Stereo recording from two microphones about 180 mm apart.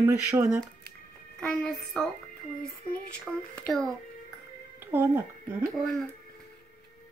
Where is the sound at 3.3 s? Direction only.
Centre (ahead or behind).